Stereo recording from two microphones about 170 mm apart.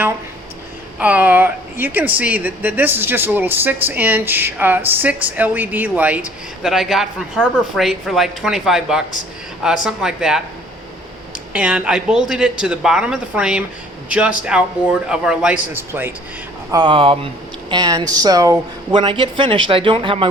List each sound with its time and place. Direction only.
0.9 s speech: 10° right (ahead or behind)
11.5 s speech: 5° right (ahead or behind)
16.7 s speech: 30° right (ahead or behind)